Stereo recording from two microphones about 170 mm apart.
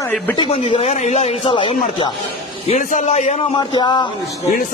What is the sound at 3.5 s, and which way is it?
Speech, 25° left (ahead or behind).